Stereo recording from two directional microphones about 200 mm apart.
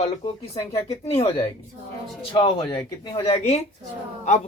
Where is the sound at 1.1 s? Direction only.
30° left (ahead or behind).